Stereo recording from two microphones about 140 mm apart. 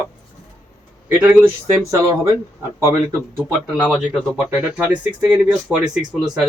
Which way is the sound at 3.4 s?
5° right (ahead or behind).